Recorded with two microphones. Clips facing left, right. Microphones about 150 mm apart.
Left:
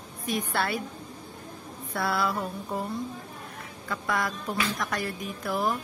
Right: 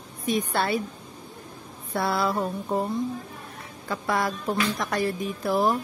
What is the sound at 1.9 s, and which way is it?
Speech, 25° right (ahead or behind).